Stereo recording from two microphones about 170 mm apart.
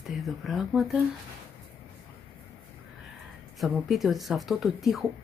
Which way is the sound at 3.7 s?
Centre (ahead or behind).